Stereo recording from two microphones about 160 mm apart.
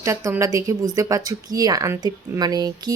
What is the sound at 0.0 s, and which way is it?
A woman's voice, 15° right (ahead or behind).